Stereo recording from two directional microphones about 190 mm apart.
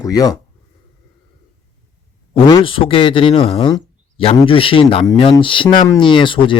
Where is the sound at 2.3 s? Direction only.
30° left (ahead or behind).